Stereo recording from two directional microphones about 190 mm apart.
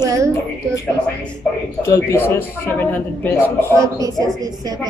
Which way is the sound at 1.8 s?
15° left (ahead or behind).